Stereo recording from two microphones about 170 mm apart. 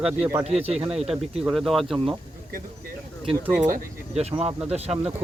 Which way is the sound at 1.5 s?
Centre (ahead or behind).